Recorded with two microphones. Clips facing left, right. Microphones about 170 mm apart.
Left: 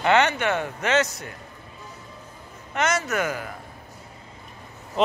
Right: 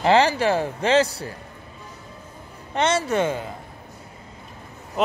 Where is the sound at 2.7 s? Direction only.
30° right (ahead or behind).